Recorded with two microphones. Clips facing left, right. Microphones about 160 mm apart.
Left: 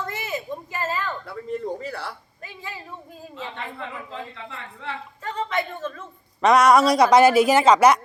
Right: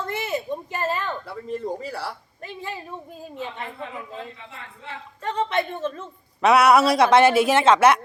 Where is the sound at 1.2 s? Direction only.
5° right (ahead or behind).